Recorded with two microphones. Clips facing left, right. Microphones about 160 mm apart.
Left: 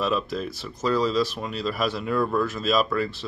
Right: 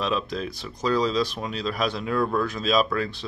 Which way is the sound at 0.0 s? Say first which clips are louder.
Left 1 dB; 5° left (ahead or behind).